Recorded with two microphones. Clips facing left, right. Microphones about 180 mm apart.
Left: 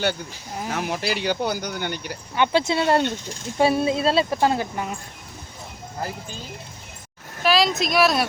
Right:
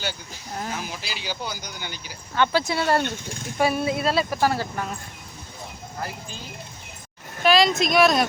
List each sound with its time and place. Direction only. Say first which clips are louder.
0.7 s speech: left 7 dB; 65° left (ahead or behind)
2.3 s a woman's voice: left 2 dB; 20° left (ahead or behind)
7.4 s speech: right 1 dB; centre (ahead or behind)